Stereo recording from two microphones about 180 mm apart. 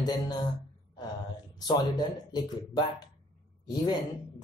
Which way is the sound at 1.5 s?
25° left (ahead or behind).